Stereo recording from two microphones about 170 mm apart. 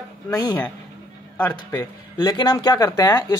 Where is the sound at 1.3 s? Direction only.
10° left (ahead or behind).